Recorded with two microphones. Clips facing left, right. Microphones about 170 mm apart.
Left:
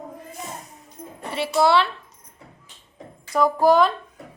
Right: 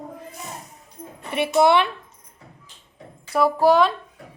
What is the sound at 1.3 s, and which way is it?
Speech, 20° right (ahead or behind).